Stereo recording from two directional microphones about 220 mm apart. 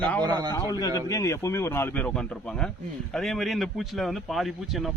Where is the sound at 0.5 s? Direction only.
15° left (ahead or behind).